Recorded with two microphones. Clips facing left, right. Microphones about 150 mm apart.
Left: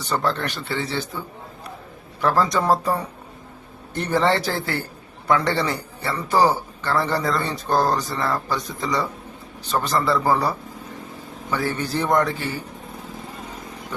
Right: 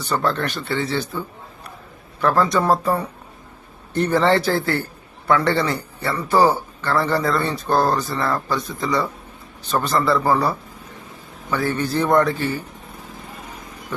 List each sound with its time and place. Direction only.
0.0 s speech: 15° left (ahead or behind)
2.2 s speech: 15° left (ahead or behind)
11.5 s speech: 15° left (ahead or behind)